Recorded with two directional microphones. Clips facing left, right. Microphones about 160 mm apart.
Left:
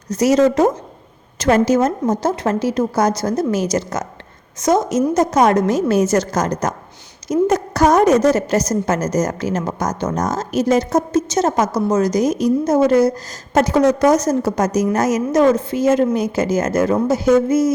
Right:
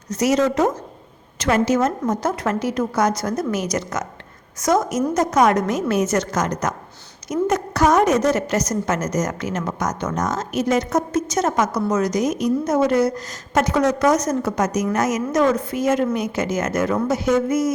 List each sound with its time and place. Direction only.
0.1 s a woman's voice: 35° left (ahead or behind)